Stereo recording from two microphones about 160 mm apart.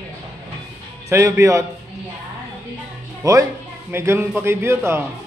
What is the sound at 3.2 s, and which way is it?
Speech, 20° right (ahead or behind).